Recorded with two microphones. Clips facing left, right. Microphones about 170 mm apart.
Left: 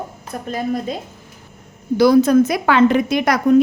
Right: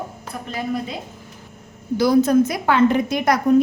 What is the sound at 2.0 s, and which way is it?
A woman's voice, 80° left.